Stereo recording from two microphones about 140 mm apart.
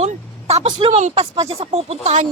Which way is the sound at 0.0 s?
50° right (ahead or behind).